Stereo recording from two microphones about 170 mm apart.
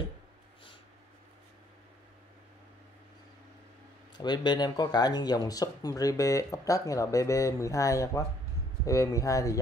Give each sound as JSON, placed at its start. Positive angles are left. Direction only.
{"t": 4.2, "sound": "speech", "side_deg": 25}